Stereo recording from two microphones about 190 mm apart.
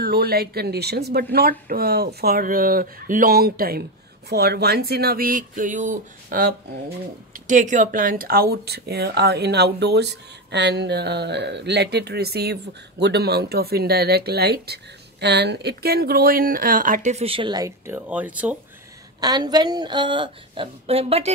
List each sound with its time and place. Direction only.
0.0 s speech: 50° right (ahead or behind); by 18.6 s 10° right (ahead or behind)
19.2 s a woman's voice: 20° right (ahead or behind)